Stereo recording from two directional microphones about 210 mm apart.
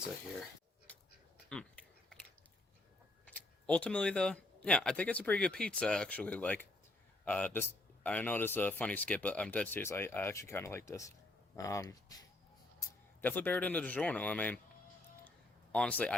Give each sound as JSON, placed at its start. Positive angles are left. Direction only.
{"t": 0.9, "sound": "a sound", "side_deg": 5}
{"t": 3.2, "sound": "speech", "side_deg": 5}
{"t": 13.2, "sound": "speech", "side_deg": 10}
{"t": 15.7, "sound": "speech", "side_deg": 5}